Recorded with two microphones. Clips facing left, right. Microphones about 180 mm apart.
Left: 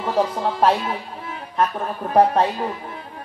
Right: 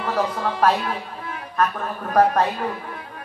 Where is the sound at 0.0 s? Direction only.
25° left (ahead or behind).